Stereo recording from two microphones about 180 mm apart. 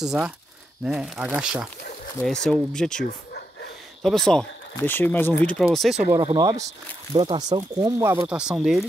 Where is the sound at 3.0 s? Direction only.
65° left (ahead or behind).